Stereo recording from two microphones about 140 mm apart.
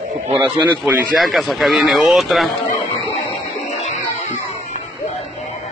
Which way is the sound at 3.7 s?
55° left (ahead or behind).